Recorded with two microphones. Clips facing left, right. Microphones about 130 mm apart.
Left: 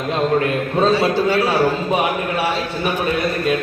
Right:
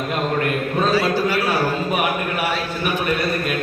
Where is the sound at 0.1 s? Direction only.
25° left (ahead or behind).